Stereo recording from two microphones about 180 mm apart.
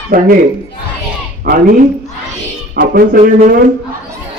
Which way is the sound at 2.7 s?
55° right (ahead or behind).